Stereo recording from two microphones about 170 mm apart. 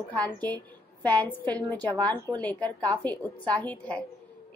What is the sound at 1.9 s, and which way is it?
Speech, 25° right (ahead or behind).